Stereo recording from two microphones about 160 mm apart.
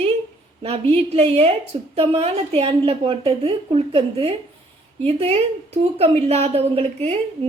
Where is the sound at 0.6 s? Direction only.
40° right (ahead or behind).